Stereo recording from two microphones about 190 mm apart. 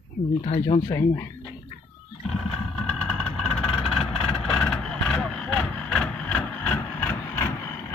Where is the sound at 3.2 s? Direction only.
Centre (ahead or behind).